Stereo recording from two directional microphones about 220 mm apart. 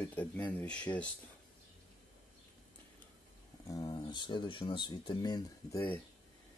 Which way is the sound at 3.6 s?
15° left (ahead or behind).